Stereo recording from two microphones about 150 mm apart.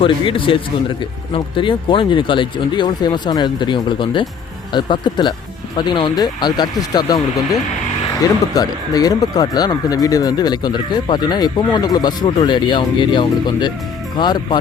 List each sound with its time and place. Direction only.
0.0 s speech: 35° left (ahead or behind)
8.5 s speech: 25° left (ahead or behind)